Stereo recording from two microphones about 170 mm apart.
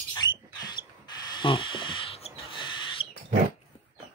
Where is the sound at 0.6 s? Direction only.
25° left (ahead or behind).